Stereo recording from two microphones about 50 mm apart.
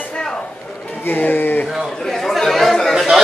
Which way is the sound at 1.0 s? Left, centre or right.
Left.